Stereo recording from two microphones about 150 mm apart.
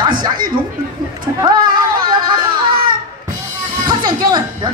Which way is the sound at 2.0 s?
30° right (ahead or behind).